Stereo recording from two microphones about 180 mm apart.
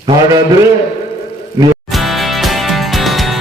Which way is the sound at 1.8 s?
Centre (ahead or behind).